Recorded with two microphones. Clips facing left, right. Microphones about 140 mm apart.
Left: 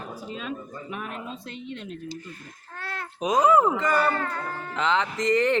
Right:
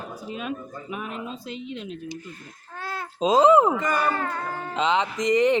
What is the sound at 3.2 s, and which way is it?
Speech, 25° right (ahead or behind).